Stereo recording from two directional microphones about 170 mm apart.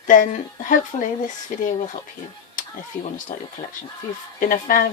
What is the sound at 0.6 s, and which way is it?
A woman's voice, 50° left (ahead or behind).